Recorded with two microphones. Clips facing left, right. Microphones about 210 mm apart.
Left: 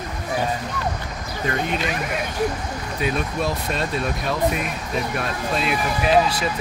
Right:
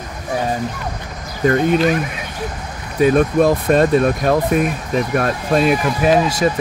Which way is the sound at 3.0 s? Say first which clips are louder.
Right 12 dB; 50° right (ahead or behind).